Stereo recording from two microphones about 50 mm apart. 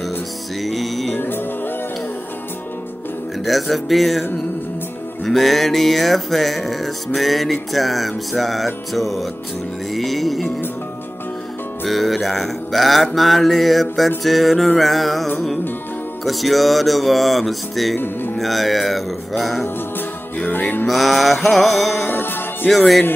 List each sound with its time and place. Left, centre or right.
0.6 s music: centre
1.1 s music: left
3.4 s mantra: centre
11.8 s mantra: centre
16.3 s mantra: centre
17.9 s speech: left
18.4 s mantra: centre
20.3 s music: left
20.8 s mantra: centre
22.0 s music: left
22.7 s mantra: centre